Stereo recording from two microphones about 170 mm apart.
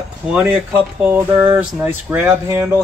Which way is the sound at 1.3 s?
25° right (ahead or behind).